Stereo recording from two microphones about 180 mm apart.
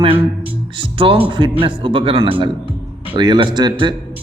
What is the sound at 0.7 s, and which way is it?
Speech, 30° right (ahead or behind).